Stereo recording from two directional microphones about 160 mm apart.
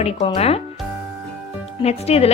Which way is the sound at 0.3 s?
40° left (ahead or behind).